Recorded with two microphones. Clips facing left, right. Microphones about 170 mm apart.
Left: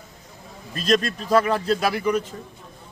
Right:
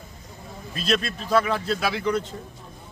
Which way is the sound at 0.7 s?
40° left (ahead or behind).